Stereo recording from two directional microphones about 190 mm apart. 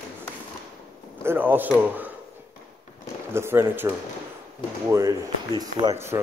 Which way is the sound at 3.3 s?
10° right (ahead or behind).